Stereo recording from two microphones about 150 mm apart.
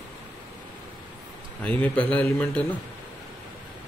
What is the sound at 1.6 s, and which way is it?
Speech, 10° left (ahead or behind).